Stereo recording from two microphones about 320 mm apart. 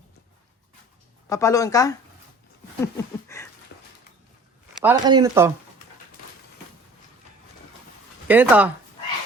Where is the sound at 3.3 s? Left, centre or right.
Centre.